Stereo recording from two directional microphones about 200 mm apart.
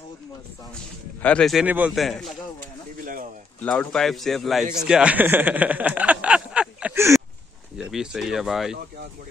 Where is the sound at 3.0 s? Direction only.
45° right (ahead or behind).